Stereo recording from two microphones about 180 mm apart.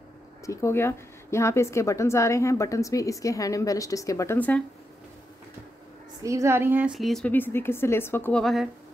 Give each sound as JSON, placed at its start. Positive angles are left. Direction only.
{"t": 0.5, "sound": "a woman's voice", "side_deg": 15}
{"t": 6.2, "sound": "a woman's voice", "side_deg": -15}